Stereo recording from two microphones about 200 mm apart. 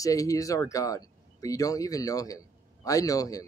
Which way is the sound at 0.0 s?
15° left (ahead or behind).